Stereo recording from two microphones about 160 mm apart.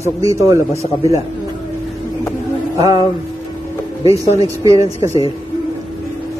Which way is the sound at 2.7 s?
25° right (ahead or behind).